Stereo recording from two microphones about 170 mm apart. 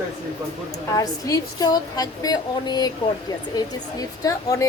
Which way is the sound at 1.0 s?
20° left (ahead or behind).